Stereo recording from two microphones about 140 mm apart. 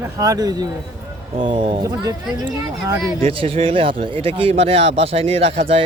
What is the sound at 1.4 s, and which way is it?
Speech, 45° right (ahead or behind).